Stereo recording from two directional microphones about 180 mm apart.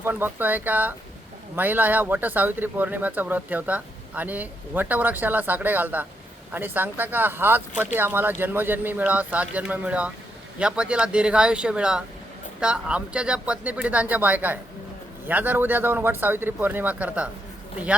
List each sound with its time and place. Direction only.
0.0 s speech: 10° right (ahead or behind)